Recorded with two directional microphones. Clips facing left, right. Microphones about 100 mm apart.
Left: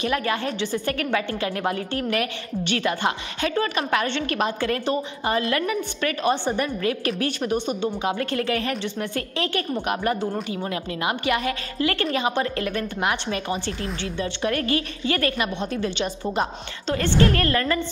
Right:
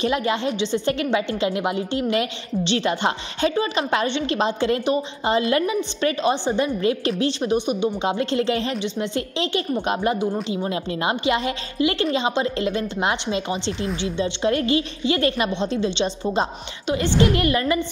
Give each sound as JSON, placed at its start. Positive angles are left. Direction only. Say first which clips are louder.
{"t": 0.0, "sound": "a woman's voice", "louder": "right 3 dB", "side_deg": -20}